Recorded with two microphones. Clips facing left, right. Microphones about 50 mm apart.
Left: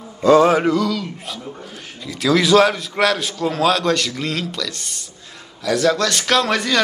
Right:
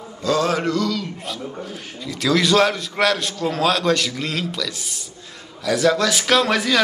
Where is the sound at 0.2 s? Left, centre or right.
Left.